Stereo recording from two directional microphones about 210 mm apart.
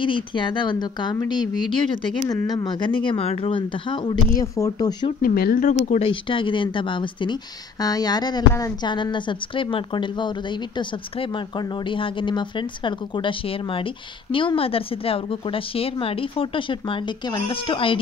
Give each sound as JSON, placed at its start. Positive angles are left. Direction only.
{"t": 0.0, "sound": "a woman's voice", "side_deg": 25}
{"t": 5.2, "sound": "a woman's voice", "side_deg": 45}